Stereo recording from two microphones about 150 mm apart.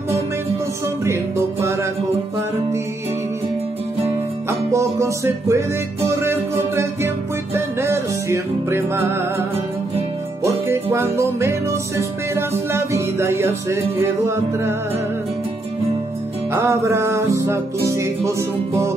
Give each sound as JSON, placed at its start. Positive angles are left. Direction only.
{"t": 1.6, "sound": "music", "side_deg": -20}
{"t": 4.0, "sound": "music", "side_deg": -20}
{"t": 10.4, "sound": "music", "side_deg": -20}
{"t": 16.5, "sound": "music", "side_deg": -15}